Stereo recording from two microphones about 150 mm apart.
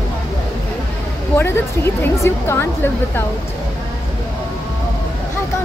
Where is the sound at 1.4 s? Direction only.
15° left (ahead or behind).